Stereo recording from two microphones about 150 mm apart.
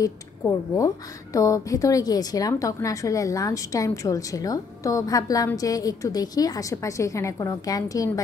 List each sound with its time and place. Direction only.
0.0 s a woman's voice: 20° left (ahead or behind)